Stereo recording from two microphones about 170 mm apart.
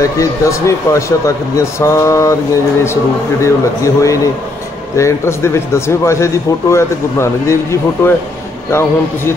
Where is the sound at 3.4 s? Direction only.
20° left (ahead or behind).